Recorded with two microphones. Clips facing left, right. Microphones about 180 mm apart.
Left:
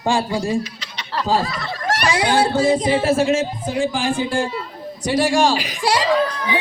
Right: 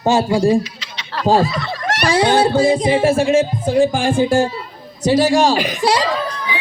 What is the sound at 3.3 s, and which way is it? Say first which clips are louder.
Speech: right 7 dB; 30° right (ahead or behind).